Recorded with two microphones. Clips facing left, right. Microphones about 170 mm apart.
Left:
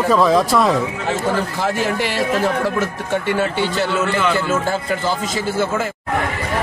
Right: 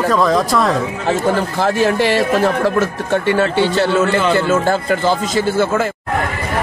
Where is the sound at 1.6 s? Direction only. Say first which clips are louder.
Right 5 dB; 75° right (ahead or behind).